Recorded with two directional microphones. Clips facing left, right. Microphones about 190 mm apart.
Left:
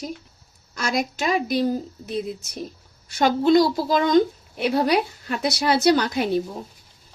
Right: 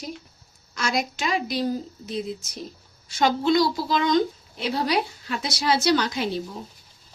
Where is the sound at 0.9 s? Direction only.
50° left (ahead or behind).